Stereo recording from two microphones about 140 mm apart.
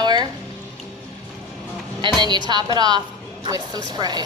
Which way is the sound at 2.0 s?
35° right (ahead or behind).